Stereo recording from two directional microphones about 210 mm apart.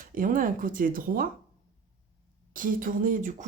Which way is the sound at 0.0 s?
40° right (ahead or behind).